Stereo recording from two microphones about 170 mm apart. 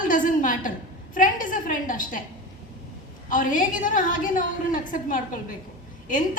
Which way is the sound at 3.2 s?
50° left (ahead or behind).